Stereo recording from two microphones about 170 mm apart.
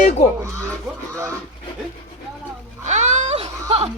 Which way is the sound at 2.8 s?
40° right (ahead or behind).